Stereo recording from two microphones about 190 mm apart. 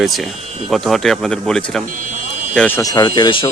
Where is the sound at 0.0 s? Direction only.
Centre (ahead or behind).